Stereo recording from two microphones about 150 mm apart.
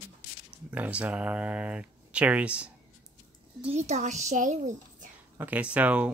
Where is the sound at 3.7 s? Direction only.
50° right (ahead or behind).